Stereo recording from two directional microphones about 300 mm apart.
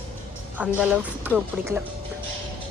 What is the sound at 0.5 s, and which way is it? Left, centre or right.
Speech, centre.